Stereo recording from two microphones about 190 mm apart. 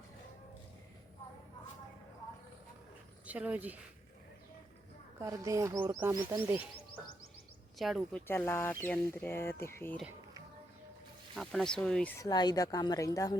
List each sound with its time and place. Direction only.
3.2 s speech: 10° right (ahead or behind)
5.2 s speech: 15° right (ahead or behind)
7.8 s speech: centre (ahead or behind)
8.3 s speech: 10° left (ahead or behind)
11.3 s speech: centre (ahead or behind)
12.2 s speech: 20° left (ahead or behind)